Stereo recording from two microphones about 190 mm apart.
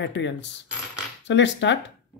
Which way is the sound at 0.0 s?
70° left (ahead or behind).